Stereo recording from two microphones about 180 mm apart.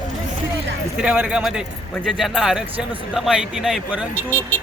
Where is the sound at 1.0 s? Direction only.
5° right (ahead or behind).